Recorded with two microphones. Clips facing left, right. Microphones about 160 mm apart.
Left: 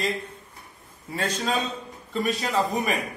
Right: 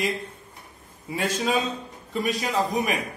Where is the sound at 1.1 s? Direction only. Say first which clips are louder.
Right 2 dB; 10° right (ahead or behind).